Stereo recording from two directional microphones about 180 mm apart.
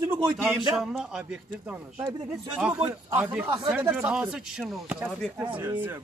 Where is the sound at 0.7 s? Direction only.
5° right (ahead or behind).